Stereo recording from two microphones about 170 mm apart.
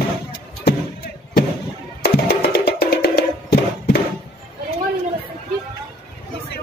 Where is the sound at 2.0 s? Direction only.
70° left (ahead or behind).